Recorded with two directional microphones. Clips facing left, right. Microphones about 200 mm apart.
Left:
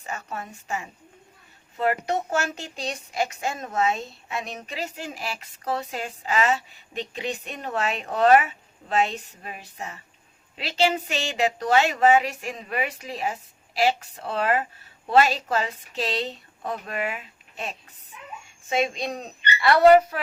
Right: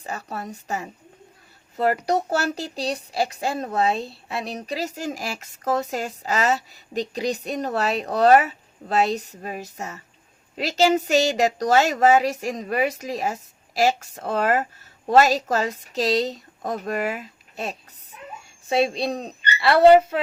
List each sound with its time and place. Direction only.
0.0 s a woman's voice: 35° right (ahead or behind)